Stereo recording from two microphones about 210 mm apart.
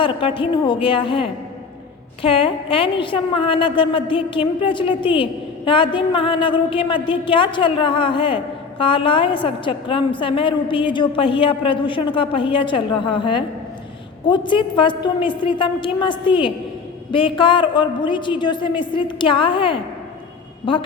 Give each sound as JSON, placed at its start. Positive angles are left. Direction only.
{"t": 0.0, "sound": "a woman's voice", "side_deg": 25}